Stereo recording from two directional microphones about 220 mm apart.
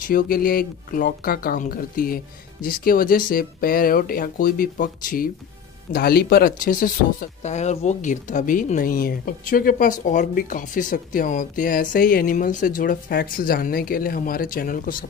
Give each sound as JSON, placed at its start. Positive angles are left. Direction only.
{"t": 0.0, "sound": "speech", "side_deg": 40}